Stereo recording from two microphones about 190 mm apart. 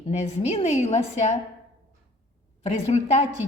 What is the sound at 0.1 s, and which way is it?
A woman's voice, 35° left (ahead or behind).